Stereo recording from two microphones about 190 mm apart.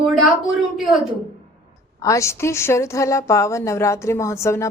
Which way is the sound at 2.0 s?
15° left (ahead or behind).